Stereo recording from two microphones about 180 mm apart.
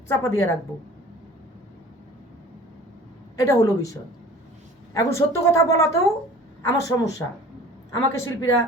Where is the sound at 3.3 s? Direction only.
15° left (ahead or behind).